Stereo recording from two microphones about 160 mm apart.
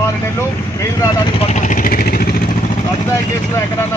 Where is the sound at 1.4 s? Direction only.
45° left (ahead or behind); by 2.3 s 65° left (ahead or behind).